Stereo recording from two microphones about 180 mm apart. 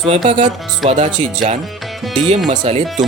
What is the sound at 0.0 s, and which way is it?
Speech, 30° right (ahead or behind).